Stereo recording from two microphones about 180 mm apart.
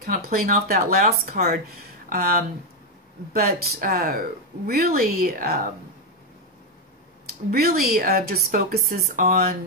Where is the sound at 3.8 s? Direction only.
55° right (ahead or behind).